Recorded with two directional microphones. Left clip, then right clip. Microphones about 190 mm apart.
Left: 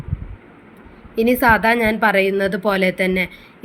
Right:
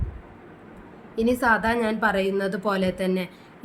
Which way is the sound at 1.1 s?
20° left (ahead or behind).